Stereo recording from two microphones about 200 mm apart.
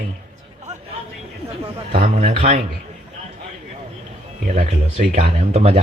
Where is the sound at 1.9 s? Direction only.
30° right (ahead or behind).